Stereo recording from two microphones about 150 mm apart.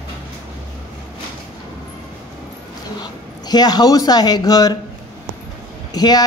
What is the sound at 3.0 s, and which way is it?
A woman's voice, 25° left (ahead or behind).